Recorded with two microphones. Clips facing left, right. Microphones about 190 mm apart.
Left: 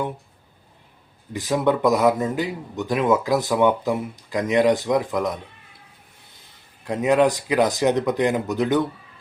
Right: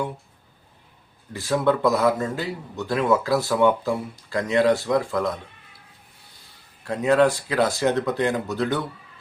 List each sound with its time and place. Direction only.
1.3 s speech: 15° left (ahead or behind)
6.8 s speech: 15° left (ahead or behind)